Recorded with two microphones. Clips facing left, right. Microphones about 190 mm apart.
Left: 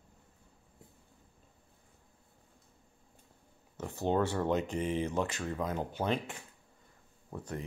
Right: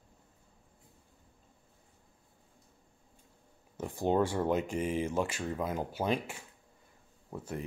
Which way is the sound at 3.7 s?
10° right (ahead or behind).